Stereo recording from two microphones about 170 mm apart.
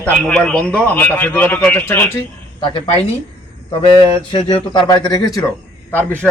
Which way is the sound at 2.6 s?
30° left (ahead or behind).